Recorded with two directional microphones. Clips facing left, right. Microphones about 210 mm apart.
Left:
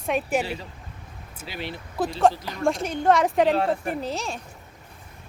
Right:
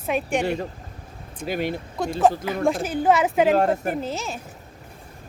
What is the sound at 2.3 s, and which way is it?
Speech, 5° right (ahead or behind).